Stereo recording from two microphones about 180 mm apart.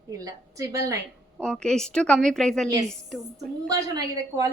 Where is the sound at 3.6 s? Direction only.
20° right (ahead or behind).